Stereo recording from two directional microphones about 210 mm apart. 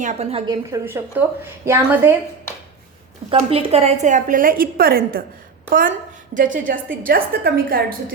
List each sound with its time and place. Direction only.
0.0 s a woman's voice: 30° right (ahead or behind)
0.7 s a woman's voice: 10° right (ahead or behind)
3.2 s a woman's voice: 25° right (ahead or behind); by 5.2 s 45° right (ahead or behind)
6.3 s a woman's voice: 40° right (ahead or behind)